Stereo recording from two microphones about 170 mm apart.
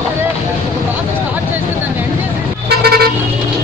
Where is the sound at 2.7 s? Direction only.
65° right (ahead or behind).